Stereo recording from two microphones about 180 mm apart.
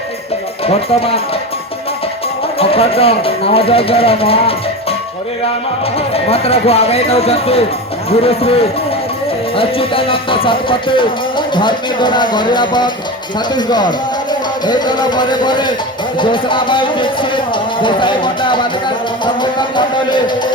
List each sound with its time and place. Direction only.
0.6 s speech: 35° left (ahead or behind)
2.6 s speech: 35° left (ahead or behind)
6.3 s speech: 35° left (ahead or behind)
9.6 s music: 30° left (ahead or behind)